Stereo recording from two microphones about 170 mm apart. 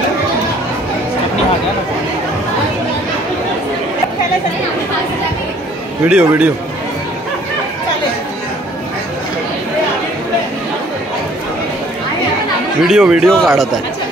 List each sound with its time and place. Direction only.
6.0 s a man's voice: 5° right (ahead or behind)
12.8 s speech: 5° right (ahead or behind)